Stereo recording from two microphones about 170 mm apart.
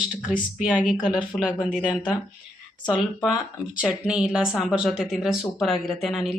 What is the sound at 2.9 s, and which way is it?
Speech, centre (ahead or behind).